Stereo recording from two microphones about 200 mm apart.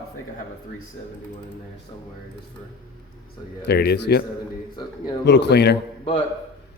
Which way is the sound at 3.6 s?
55° left (ahead or behind).